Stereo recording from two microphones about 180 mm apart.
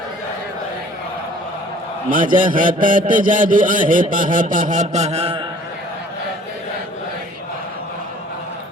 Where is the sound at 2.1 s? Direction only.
50° right (ahead or behind).